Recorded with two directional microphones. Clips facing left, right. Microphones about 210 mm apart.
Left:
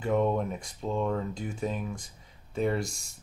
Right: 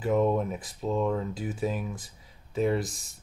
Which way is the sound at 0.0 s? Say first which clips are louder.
Right 2 dB; 5° right (ahead or behind).